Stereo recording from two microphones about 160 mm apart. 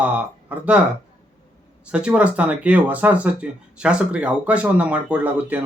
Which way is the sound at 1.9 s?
5° right (ahead or behind).